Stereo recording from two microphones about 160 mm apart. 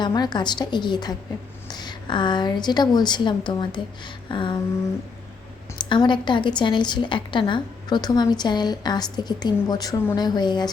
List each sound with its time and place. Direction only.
0.0 s a woman's voice: 25° left (ahead or behind)
5.9 s a woman's voice: 30° left (ahead or behind)